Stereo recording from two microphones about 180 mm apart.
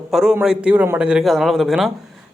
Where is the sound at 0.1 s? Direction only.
5° right (ahead or behind).